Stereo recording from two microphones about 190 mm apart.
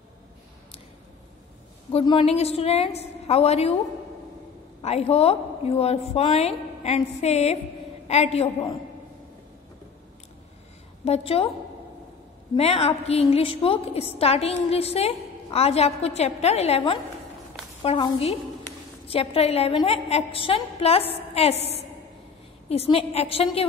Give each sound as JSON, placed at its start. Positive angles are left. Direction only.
{"t": 1.9, "sound": "a woman's voice", "side_deg": 30}
{"t": 4.8, "sound": "a woman's voice", "side_deg": 35}
{"t": 11.1, "sound": "a woman's voice", "side_deg": 30}
{"t": 12.5, "sound": "a woman's voice", "side_deg": 30}